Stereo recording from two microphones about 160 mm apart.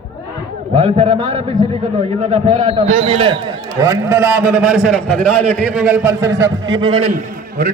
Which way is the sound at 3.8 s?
20° right (ahead or behind).